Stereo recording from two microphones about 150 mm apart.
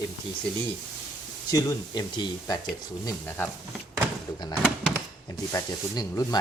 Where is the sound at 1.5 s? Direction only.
25° left (ahead or behind).